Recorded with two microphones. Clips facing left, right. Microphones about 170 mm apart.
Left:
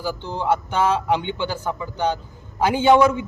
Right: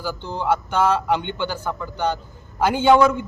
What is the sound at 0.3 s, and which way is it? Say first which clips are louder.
Speech: even; 10° right (ahead or behind).